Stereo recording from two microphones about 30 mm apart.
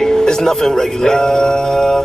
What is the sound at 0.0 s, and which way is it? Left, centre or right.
Speech, centre.